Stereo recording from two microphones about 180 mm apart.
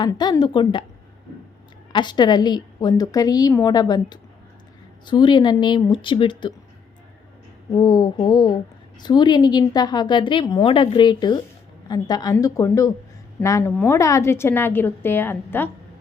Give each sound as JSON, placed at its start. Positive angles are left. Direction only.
{"t": 0.0, "sound": "a woman's voice", "side_deg": 25}
{"t": 1.9, "sound": "a woman's voice", "side_deg": 25}
{"t": 7.7, "sound": "a woman's voice", "side_deg": 25}